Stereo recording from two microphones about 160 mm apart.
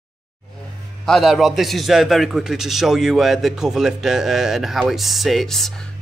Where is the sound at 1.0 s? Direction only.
Centre (ahead or behind).